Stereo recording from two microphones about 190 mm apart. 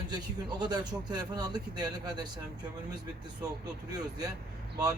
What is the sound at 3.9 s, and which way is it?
Speech, 20° right (ahead or behind).